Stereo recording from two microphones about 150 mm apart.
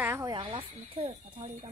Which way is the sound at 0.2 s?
30° right (ahead or behind).